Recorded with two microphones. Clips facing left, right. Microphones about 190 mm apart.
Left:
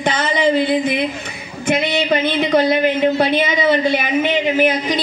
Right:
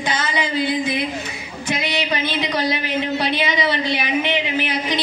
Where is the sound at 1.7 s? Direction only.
55° left (ahead or behind).